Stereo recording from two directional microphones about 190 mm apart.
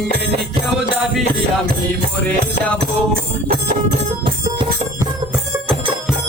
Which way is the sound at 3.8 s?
25° right (ahead or behind).